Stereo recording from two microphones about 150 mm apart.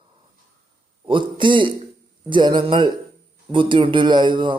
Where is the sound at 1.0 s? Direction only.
35° right (ahead or behind).